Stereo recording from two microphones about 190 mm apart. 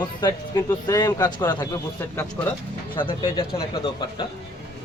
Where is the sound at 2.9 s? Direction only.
25° left (ahead or behind).